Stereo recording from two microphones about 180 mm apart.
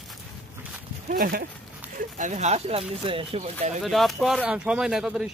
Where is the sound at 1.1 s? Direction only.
50° right (ahead or behind).